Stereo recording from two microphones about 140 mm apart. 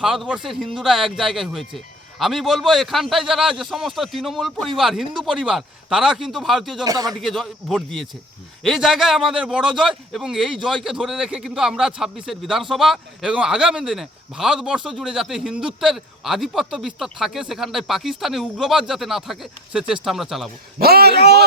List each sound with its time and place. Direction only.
0.0 s a man's voice: centre (ahead or behind)
6.8 s a man's voice: 25° right (ahead or behind)
7.2 s a man's voice: centre (ahead or behind)
20.7 s a man's voice: 90° right